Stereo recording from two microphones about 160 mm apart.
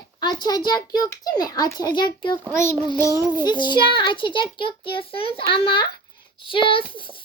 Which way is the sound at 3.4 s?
30° left (ahead or behind).